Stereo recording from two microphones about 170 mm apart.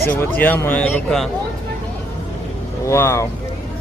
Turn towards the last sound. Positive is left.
turn(degrees=15)  # may be behind; listen again after turning